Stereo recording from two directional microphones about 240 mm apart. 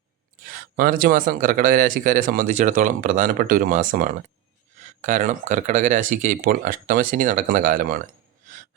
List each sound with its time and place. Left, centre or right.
0.8 s speech: right